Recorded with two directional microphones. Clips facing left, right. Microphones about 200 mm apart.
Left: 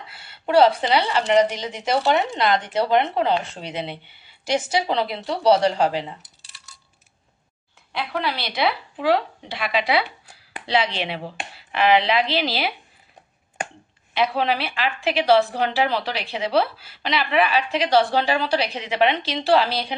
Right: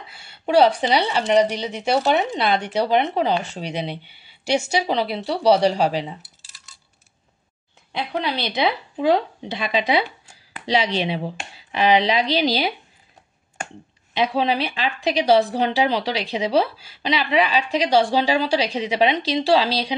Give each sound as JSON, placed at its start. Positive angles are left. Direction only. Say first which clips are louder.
{"t": 0.1, "sound": "a woman's voice", "louder": "right 1 dB", "side_deg": -15}
{"t": 7.9, "sound": "speech", "louder": "right 1 dB", "side_deg": -20}
{"t": 14.1, "sound": "speech", "louder": "right 1 dB", "side_deg": -15}